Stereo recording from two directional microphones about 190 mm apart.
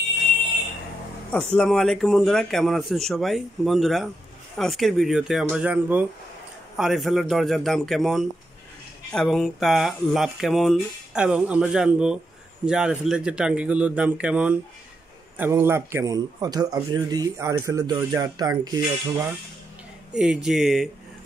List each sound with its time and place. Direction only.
1.3 s a man's voice: 5° left (ahead or behind); by 18.8 s 20° right (ahead or behind)
20.1 s speech: 5° right (ahead or behind)